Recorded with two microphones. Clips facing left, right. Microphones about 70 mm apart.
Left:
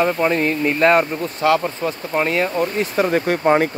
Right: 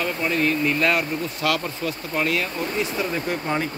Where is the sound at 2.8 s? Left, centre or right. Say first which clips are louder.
Left 7 dB; left.